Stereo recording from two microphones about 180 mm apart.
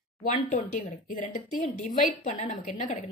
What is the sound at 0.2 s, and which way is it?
A woman's voice, 45° left (ahead or behind).